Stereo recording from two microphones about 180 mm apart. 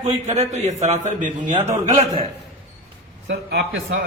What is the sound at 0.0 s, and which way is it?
A man's voice, 35° right (ahead or behind).